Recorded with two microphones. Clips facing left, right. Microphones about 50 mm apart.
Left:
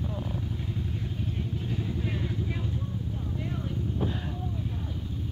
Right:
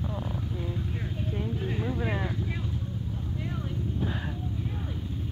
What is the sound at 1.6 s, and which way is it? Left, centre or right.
Vehicle, right.